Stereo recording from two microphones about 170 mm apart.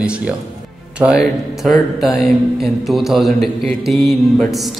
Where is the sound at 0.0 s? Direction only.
5° right (ahead or behind).